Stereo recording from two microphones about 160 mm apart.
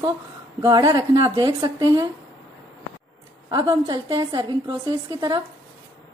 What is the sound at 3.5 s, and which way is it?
A woman's voice, 25° right (ahead or behind).